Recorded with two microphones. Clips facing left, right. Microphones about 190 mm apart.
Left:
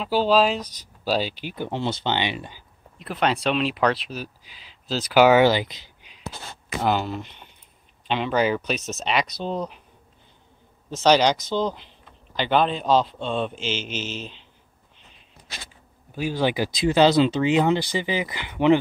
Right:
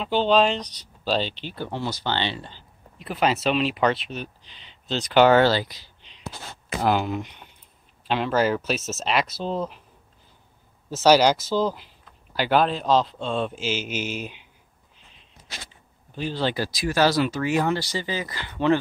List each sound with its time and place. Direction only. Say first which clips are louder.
0.0 s speech: even; 5° left (ahead or behind)
3.0 s speech: even; centre (ahead or behind); by 5.9 s 20° left (ahead or behind)
6.8 s speech: right 1 dB; 10° right (ahead or behind)
10.9 s speech: right 1 dB; 5° right (ahead or behind)
16.2 s speech: left 3 dB; 10° left (ahead or behind)